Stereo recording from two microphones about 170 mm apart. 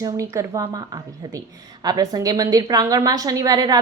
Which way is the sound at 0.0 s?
20° right (ahead or behind).